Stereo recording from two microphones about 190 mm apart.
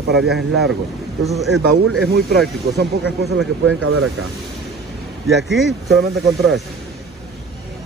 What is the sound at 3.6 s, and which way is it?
Speech, 90° right.